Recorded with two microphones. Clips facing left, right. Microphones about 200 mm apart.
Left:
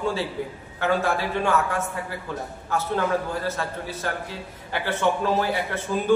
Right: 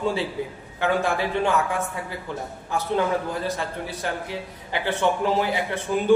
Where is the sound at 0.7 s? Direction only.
15° right (ahead or behind).